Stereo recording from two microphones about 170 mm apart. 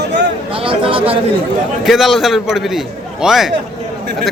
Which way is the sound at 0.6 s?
30° right (ahead or behind).